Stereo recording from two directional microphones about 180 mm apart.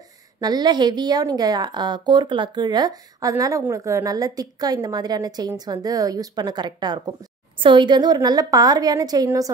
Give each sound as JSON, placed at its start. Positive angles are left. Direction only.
{"t": 0.4, "sound": "a woman's voice", "side_deg": -20}